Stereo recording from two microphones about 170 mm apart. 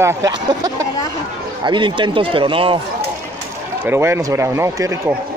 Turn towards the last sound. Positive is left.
turn(degrees=-15)  # may be behind; listen again after turning